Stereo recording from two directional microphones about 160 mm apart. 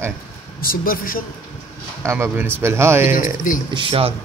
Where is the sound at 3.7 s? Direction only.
35° right (ahead or behind).